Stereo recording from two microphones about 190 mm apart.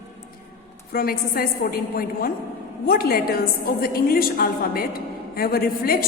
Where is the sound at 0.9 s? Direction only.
50° left (ahead or behind).